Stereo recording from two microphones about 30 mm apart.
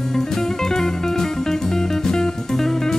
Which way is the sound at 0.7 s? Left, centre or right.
Centre.